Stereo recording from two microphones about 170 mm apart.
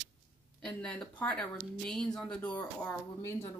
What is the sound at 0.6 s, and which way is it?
Speech, 5° left (ahead or behind).